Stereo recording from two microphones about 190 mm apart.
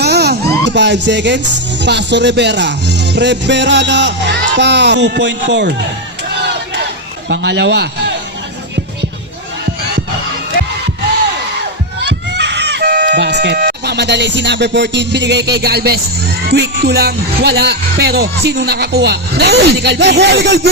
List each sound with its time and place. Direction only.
0.0 s speech: 60° right (ahead or behind)
6.2 s crowd: 60° right (ahead or behind)
7.3 s a man's voice: 65° right (ahead or behind)
12.0 s a sound: 65° right (ahead or behind)
16.5 s speech: 60° right (ahead or behind)